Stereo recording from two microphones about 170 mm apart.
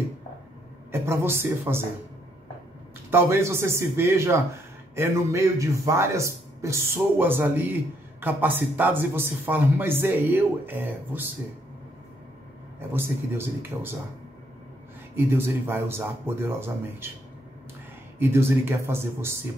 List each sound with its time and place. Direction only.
1.0 s speech: 15° right (ahead or behind)
3.1 s speech: 15° right (ahead or behind)
12.9 s speech: 15° right (ahead or behind)
15.1 s speech: 15° right (ahead or behind)
18.2 s speech: 15° right (ahead or behind)